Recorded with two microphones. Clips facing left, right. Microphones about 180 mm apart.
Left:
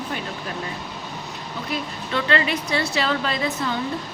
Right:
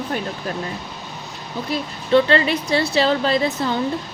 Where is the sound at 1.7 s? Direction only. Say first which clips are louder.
Right 10 dB; 30° right (ahead or behind).